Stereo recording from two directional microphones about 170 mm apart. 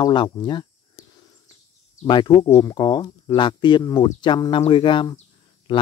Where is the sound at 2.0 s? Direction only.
25° left (ahead or behind).